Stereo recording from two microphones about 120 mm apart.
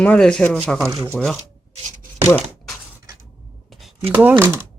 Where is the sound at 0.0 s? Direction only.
10° left (ahead or behind).